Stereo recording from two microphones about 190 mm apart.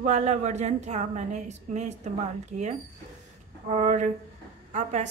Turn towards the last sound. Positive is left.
turn(degrees=-40)  # may be behind; listen again after turning